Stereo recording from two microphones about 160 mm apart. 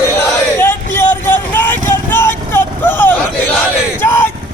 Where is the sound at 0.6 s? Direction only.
15° left (ahead or behind).